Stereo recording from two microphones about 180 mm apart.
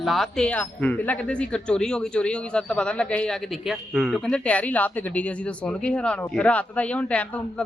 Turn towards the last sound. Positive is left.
turn(degrees=5)  # may be behind; listen again after turning